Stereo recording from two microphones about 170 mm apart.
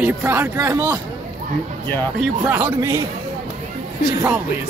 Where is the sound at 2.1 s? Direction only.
10° right (ahead or behind).